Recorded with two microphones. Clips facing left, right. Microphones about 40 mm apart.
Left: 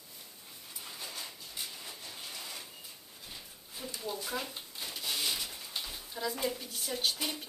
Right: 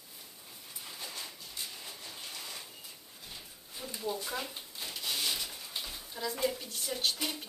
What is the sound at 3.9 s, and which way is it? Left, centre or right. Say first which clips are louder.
Drawer open or close: right 1 dB; centre.